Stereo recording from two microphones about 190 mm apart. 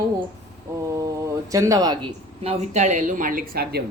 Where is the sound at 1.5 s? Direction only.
15° right (ahead or behind); by 3.8 s 55° right (ahead or behind).